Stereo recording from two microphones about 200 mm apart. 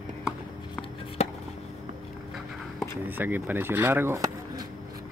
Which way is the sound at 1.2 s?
30° left (ahead or behind).